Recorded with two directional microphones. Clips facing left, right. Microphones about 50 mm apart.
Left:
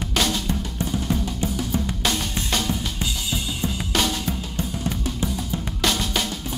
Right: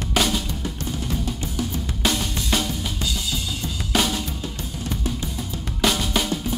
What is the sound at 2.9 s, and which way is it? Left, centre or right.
Drum kit, centre.